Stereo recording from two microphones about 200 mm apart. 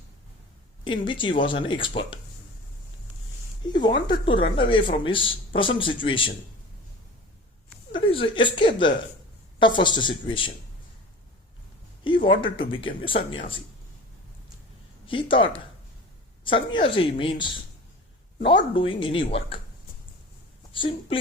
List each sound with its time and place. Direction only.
0.9 s speech: 25° left (ahead or behind)
3.7 s speech: 20° left (ahead or behind)
8.0 s speech: 25° left (ahead or behind)
12.0 s speech: 25° left (ahead or behind)
15.0 s a woman's voice: 25° left (ahead or behind)
20.7 s speech: 25° left (ahead or behind)